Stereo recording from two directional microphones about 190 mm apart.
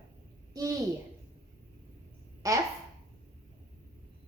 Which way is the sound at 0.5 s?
20° right (ahead or behind).